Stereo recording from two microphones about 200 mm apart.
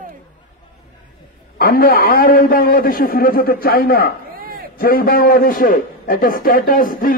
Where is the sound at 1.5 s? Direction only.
45° left (ahead or behind).